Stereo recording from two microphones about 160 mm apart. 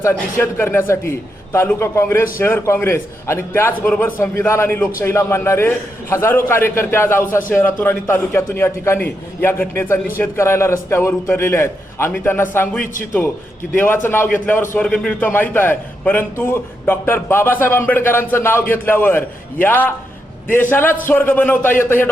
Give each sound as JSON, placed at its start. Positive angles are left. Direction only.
{"t": 0.0, "sound": "a man's voice", "side_deg": 15}